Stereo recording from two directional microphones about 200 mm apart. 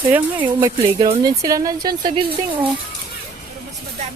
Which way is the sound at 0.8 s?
30° right (ahead or behind).